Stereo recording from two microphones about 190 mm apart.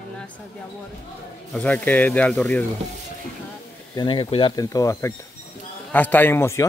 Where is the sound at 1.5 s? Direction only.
10° left (ahead or behind).